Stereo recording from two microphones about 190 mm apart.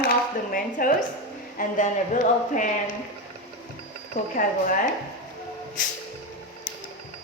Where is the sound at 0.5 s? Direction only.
45° left (ahead or behind).